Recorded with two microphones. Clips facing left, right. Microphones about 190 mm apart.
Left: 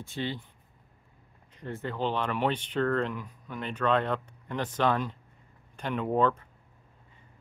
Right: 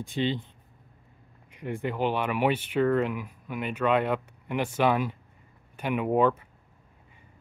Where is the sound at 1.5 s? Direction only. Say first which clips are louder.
Right 4 dB; 10° right (ahead or behind).